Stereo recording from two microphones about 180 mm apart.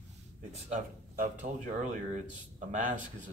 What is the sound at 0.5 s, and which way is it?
Speech, 40° right (ahead or behind).